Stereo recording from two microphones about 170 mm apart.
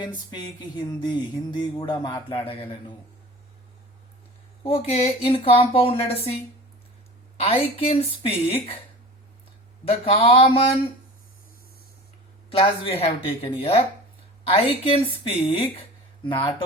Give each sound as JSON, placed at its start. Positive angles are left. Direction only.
{"t": 0.0, "sound": "music", "side_deg": 25}
{"t": 4.6, "sound": "a woman's voice", "side_deg": 35}
{"t": 7.3, "sound": "a woman's voice", "side_deg": 35}
{"t": 10.0, "sound": "a woman's voice", "side_deg": 35}
{"t": 12.5, "sound": "a woman's voice", "side_deg": 30}